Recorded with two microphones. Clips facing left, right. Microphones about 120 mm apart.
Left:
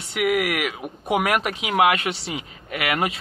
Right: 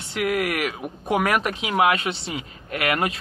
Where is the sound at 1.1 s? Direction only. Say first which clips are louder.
Even; 10° left (ahead or behind).